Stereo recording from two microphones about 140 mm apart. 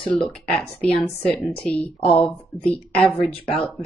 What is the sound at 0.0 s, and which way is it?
Speech, 40° left (ahead or behind).